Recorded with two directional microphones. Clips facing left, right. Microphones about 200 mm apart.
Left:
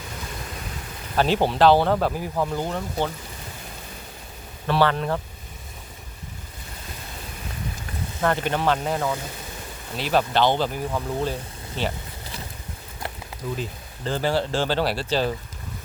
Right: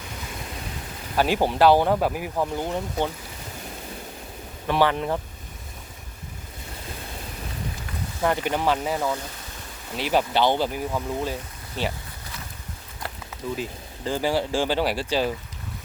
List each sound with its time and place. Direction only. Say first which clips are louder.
1.1 s speech: left 1 dB; 10° right (ahead or behind)
4.6 s speech: left 1 dB; 15° right (ahead or behind)
8.2 s speech: left 1 dB; 10° right (ahead or behind)
10.9 s speech: left 1 dB; centre (ahead or behind)
13.6 s speech: even; 10° right (ahead or behind)